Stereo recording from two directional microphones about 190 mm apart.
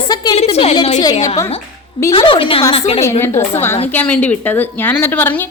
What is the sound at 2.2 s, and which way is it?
Speech, 25° left (ahead or behind).